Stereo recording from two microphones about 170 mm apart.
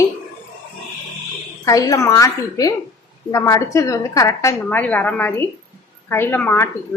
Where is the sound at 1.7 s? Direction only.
20° left (ahead or behind).